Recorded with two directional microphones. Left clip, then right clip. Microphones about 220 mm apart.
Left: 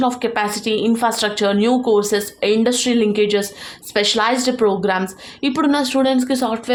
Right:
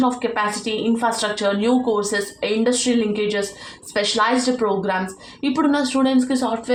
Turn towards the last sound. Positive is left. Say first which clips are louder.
# left 2 dB
turn(degrees=50)  # may be behind; listen again after turning